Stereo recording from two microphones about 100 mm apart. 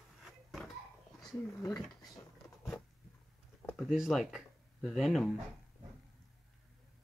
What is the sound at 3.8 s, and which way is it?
Speech, 5° right (ahead or behind).